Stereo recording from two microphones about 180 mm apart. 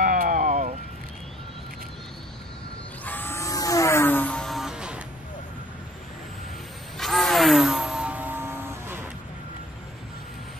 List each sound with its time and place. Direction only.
0.0 s vehicle: 45° right (ahead or behind)
3.1 s music: 10° left (ahead or behind); by 5.0 s 5° right (ahead or behind)
7.0 s a sound: centre (ahead or behind)